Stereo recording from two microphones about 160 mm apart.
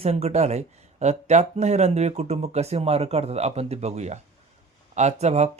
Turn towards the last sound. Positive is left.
turn(degrees=-45)  # may be behind; listen again after turning